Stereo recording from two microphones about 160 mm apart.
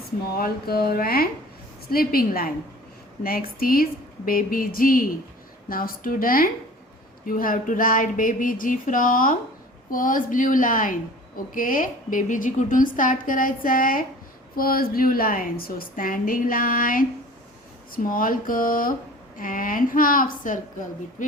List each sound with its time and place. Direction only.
0.3 s a woman's voice: 70° left (ahead or behind)